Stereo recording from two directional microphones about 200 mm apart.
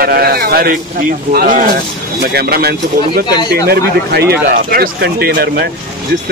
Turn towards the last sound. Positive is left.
turn(degrees=-50)  # may be behind; listen again after turning